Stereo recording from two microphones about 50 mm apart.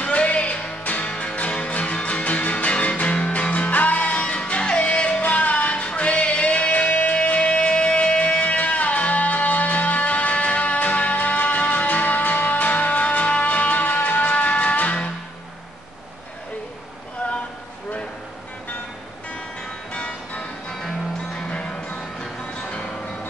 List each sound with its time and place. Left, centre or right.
0.0 s music: left
19.9 s music: left
20.8 s music: centre
21.5 s music: left